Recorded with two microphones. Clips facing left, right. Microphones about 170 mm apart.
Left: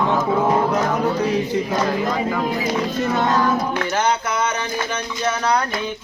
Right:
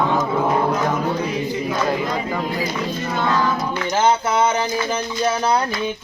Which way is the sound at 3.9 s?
25° right (ahead or behind).